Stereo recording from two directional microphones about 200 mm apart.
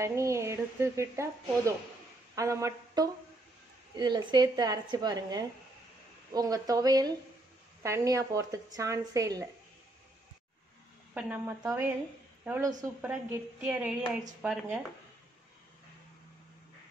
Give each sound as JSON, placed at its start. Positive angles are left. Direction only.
{"t": 0.0, "sound": "speech", "side_deg": -15}
{"t": 2.3, "sound": "a woman's voice", "side_deg": -15}
{"t": 11.1, "sound": "speech", "side_deg": -5}